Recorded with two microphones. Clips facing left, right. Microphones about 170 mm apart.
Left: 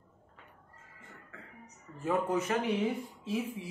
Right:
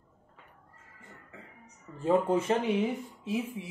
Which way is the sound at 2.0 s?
30° right (ahead or behind).